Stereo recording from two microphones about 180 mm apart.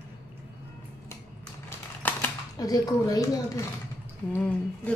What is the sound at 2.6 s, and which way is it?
A woman's voice, 20° left (ahead or behind).